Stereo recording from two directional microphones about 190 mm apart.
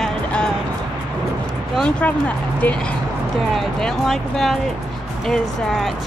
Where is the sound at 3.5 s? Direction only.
Centre (ahead or behind).